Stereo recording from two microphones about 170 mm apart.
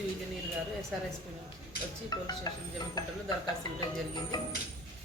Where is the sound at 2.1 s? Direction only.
25° left (ahead or behind).